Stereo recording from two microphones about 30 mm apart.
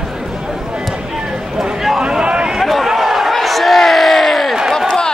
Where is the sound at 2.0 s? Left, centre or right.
Right.